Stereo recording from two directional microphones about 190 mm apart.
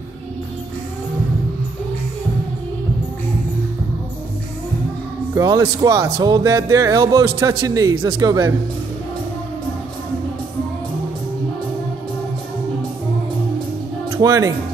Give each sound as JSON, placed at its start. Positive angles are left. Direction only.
{"t": 5.3, "sound": "speech", "side_deg": -20}
{"t": 14.1, "sound": "speech", "side_deg": -15}